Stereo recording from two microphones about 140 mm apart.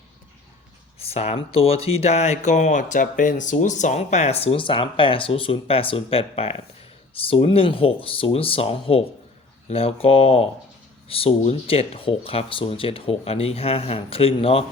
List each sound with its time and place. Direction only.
0.9 s speech: 45° left (ahead or behind)